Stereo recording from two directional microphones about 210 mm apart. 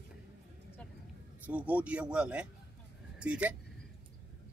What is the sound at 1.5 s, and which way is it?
Speech, 5° right (ahead or behind).